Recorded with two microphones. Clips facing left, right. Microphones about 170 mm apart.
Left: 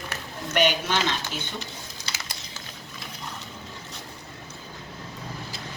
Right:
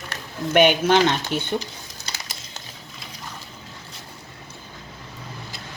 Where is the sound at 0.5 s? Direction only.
55° right (ahead or behind).